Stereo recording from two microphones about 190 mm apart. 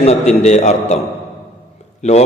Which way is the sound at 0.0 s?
35° left (ahead or behind).